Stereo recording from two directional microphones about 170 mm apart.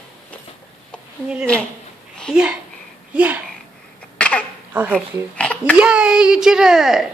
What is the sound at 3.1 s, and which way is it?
Speech, 10° right (ahead or behind).